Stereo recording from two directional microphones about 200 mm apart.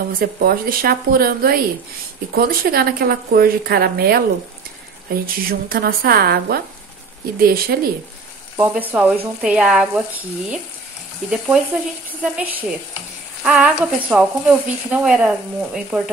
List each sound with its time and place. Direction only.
0.2 s a woman's voice: 50° right (ahead or behind)
8.5 s speech: 10° right (ahead or behind)